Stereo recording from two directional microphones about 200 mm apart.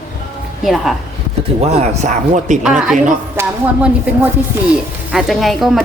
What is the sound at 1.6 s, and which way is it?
Speech, 35° right (ahead or behind).